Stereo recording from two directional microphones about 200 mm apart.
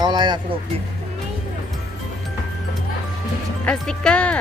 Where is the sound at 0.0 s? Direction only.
20° right (ahead or behind).